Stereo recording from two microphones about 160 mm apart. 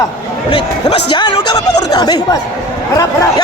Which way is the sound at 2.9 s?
20° left (ahead or behind).